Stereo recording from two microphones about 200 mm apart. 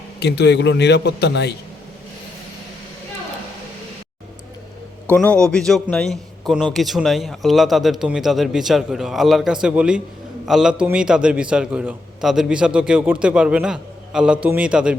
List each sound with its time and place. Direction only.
0.2 s a man's voice: 55° left (ahead or behind)
5.1 s a man's voice: 5° left (ahead or behind)